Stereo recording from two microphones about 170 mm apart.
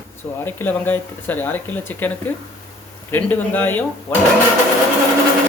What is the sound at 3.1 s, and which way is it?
Speech, 10° left (ahead or behind).